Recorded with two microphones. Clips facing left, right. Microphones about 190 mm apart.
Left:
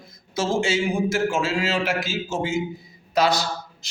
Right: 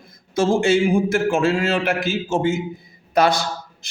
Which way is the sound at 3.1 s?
55° right (ahead or behind).